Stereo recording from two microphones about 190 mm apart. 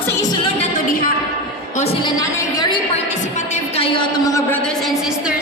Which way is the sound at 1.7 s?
35° left (ahead or behind).